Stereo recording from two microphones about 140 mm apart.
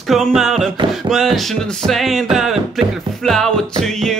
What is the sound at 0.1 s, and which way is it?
Music, centre (ahead or behind).